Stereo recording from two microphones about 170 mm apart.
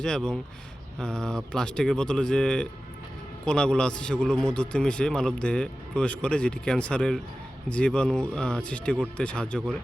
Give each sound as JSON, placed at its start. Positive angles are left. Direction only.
{"t": 0.0, "sound": "a man's voice", "side_deg": 5}